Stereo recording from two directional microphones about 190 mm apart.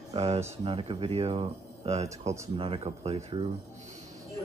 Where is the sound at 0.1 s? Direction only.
30° right (ahead or behind).